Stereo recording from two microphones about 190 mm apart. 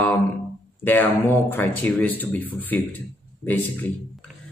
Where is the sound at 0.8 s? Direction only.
10° left (ahead or behind).